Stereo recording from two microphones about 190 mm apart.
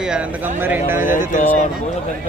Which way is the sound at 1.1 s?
45° left (ahead or behind).